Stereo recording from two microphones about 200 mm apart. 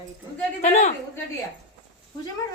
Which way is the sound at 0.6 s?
40° left (ahead or behind).